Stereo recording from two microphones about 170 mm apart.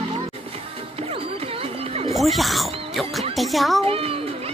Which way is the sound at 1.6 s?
35° right (ahead or behind).